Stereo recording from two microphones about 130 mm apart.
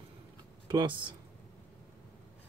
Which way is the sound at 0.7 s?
40° right (ahead or behind).